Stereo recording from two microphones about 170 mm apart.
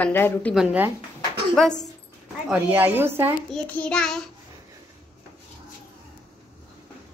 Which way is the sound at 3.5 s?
5° left (ahead or behind).